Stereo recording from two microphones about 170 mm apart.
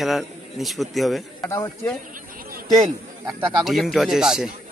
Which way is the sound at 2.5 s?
45° right (ahead or behind).